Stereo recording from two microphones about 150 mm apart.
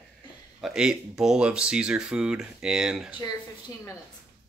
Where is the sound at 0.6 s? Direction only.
5° right (ahead or behind).